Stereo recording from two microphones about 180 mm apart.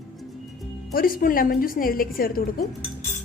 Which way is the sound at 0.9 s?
50° left (ahead or behind).